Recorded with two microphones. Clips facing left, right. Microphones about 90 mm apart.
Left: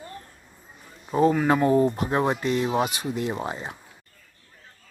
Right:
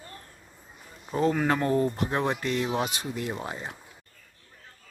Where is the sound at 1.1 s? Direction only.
15° left (ahead or behind).